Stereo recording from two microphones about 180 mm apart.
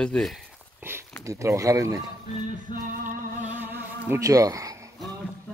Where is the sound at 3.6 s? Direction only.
15° right (ahead or behind).